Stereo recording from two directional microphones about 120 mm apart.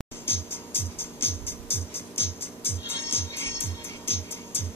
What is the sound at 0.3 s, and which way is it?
Music, 20° left (ahead or behind).